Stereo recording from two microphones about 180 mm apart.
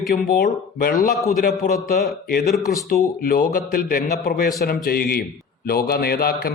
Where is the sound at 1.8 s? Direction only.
55° left (ahead or behind).